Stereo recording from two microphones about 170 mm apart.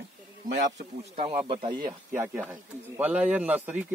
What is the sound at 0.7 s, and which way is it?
Speech, 50° right (ahead or behind).